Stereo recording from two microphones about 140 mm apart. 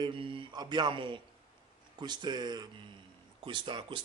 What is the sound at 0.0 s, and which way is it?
Speech, 40° right (ahead or behind).